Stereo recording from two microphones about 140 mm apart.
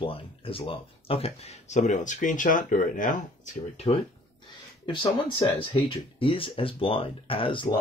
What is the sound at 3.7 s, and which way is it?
Speech, 50° left (ahead or behind).